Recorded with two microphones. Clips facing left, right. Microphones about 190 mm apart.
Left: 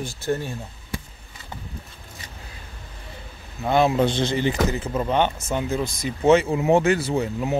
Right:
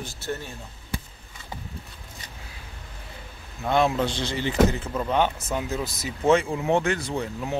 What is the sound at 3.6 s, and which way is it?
Speech, centre (ahead or behind).